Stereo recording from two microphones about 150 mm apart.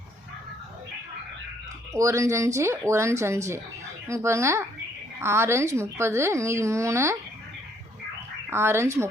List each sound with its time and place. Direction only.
1.9 s a woman's voice: 20° right (ahead or behind)
8.4 s speech: 15° right (ahead or behind)